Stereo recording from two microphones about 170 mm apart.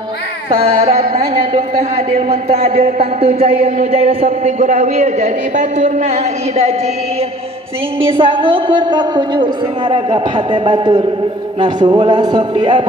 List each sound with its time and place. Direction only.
0.5 s speech: 40° right (ahead or behind)
8.0 s a woman's voice: 30° right (ahead or behind)